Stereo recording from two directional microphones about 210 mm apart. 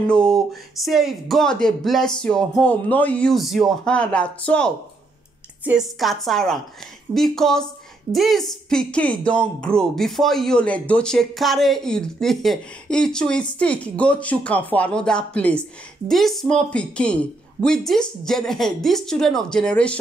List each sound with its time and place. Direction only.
0.0 s speech: 5° left (ahead or behind)